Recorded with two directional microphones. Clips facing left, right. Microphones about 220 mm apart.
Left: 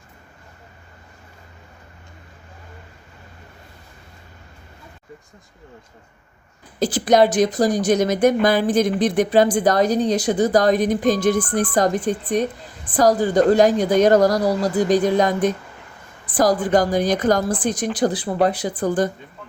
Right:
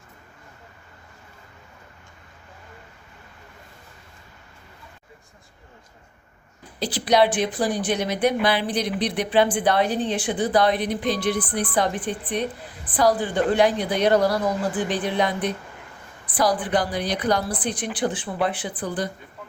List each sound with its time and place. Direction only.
6.7 s speech: 45° left (ahead or behind)